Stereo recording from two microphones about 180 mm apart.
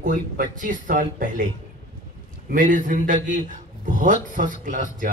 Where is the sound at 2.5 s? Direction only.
45° right (ahead or behind).